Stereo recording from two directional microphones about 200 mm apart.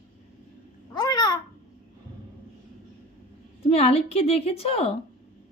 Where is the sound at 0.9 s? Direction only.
20° left (ahead or behind).